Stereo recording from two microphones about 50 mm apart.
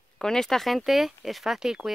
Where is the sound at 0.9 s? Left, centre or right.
Centre.